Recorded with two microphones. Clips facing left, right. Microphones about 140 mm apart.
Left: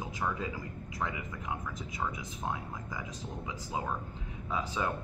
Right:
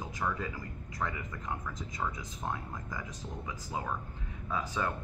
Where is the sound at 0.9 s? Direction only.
10° left (ahead or behind).